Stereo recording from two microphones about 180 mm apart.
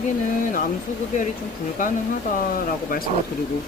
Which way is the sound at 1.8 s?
45° left (ahead or behind).